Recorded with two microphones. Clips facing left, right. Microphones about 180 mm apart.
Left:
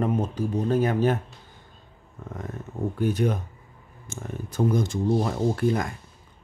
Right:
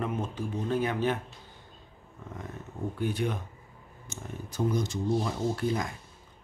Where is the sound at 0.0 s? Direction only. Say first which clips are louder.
Left 7 dB; 40° left (ahead or behind).